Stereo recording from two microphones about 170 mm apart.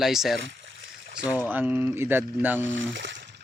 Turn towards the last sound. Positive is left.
turn(degrees=-90)